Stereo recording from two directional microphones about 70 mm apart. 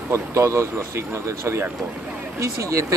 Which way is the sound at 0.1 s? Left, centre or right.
Right.